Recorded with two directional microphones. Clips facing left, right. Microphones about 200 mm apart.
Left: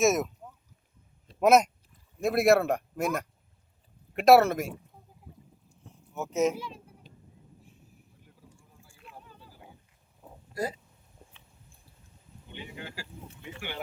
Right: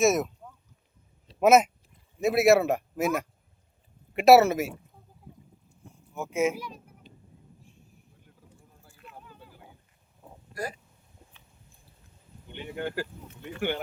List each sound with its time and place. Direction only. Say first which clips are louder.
0.0 s speech: right 1 dB; centre (ahead or behind)
1.4 s speech: right 2 dB; 5° right (ahead or behind)
5.9 s a sound: even; 10° right (ahead or behind)
8.9 s a sound: right 2 dB; centre (ahead or behind)
10.5 s speech: left 3 dB; 25° left (ahead or behind)
12.6 s speech: right 12 dB; 55° right (ahead or behind)